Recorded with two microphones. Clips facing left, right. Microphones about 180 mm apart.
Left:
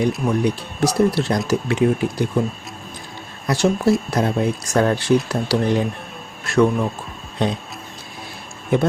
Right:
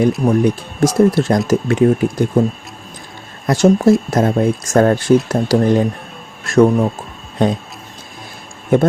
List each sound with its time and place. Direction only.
0.3 s speech: 45° right (ahead or behind)
3.4 s speech: 50° right (ahead or behind)
8.7 s speech: 50° right (ahead or behind)